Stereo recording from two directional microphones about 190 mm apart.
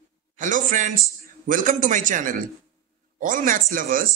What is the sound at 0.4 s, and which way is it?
A man's voice, 40° right (ahead or behind).